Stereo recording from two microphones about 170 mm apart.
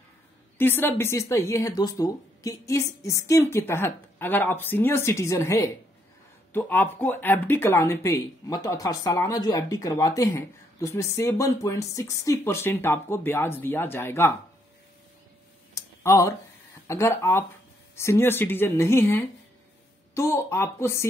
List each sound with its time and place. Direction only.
0.6 s speech: 15° left (ahead or behind)
15.7 s a sound: 20° left (ahead or behind)
16.8 s speech: 15° left (ahead or behind)